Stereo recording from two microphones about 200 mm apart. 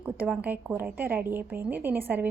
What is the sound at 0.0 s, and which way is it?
A woman's voice, 5° right (ahead or behind).